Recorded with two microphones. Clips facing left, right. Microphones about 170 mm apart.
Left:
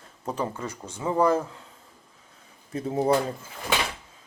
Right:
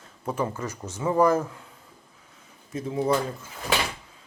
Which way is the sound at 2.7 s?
35° left (ahead or behind).